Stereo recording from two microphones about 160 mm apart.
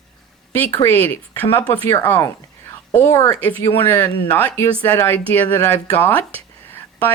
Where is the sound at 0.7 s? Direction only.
15° left (ahead or behind).